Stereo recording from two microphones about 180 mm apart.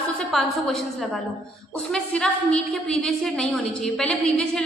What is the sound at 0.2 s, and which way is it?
A woman's voice, centre (ahead or behind).